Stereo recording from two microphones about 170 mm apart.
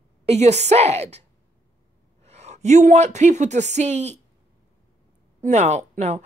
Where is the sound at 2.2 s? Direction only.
40° right (ahead or behind).